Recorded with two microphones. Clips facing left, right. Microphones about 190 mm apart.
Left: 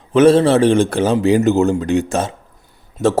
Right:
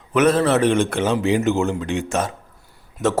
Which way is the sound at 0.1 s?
30° left (ahead or behind).